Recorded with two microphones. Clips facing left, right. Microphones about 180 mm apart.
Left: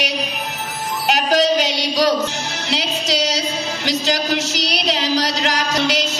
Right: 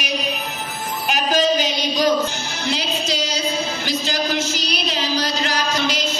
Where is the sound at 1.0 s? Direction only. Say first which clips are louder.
Left 2 dB; 80° left.